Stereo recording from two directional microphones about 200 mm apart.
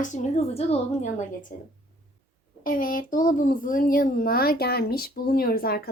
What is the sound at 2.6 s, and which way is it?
Speech, 45° left (ahead or behind).